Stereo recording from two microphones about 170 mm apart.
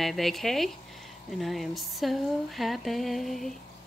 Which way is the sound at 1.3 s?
Centre (ahead or behind).